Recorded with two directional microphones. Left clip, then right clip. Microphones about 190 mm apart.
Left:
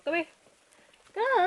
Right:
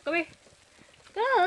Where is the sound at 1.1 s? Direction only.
15° right (ahead or behind).